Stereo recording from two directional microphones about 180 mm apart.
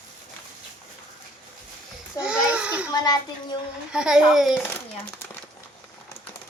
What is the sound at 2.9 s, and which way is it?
Speech, 20° left (ahead or behind).